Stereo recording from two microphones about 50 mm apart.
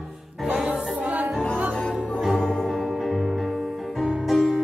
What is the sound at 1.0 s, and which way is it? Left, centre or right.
Music, right.